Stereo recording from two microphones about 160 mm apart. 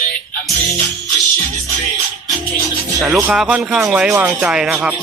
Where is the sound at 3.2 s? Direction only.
5° right (ahead or behind).